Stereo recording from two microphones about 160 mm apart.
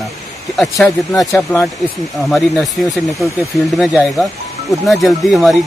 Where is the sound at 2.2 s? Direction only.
Centre (ahead or behind).